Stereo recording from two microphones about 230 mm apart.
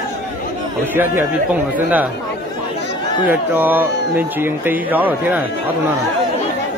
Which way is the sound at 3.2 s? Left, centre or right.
Centre.